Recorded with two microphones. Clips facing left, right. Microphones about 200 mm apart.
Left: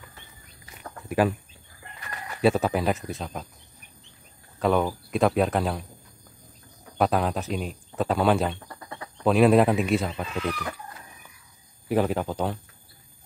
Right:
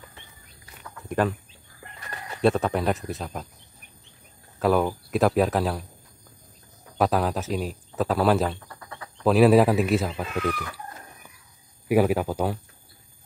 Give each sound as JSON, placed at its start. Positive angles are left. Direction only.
{"t": 1.0, "sound": "a sound", "side_deg": 10}
{"t": 2.4, "sound": "speech", "side_deg": 5}
{"t": 4.6, "sound": "speech", "side_deg": -5}
{"t": 7.0, "sound": "speech", "side_deg": 0}
{"t": 11.9, "sound": "speech", "side_deg": -10}